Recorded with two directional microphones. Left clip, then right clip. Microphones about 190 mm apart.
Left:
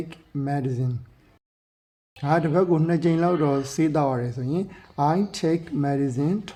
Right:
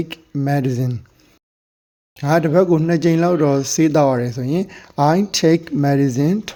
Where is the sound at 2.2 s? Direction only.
30° right (ahead or behind).